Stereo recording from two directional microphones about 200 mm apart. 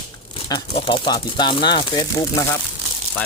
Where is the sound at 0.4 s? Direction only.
25° left (ahead or behind).